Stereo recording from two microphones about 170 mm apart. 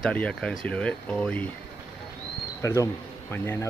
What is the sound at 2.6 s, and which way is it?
Speech, 15° left (ahead or behind).